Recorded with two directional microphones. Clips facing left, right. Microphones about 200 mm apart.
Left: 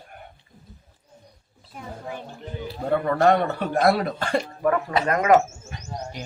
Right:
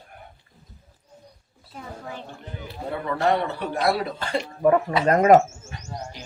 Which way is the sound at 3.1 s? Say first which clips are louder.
Left 2 dB; 50° left (ahead or behind).